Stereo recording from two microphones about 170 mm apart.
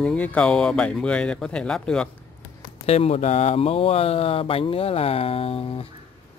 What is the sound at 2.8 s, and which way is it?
Speech, 35° left (ahead or behind).